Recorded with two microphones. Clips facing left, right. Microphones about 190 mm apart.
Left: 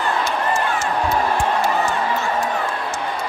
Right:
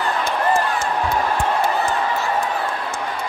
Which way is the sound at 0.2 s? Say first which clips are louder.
Right 2 dB; 55° right (ahead or behind).